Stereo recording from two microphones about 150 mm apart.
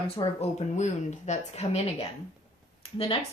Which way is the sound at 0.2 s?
30° left (ahead or behind).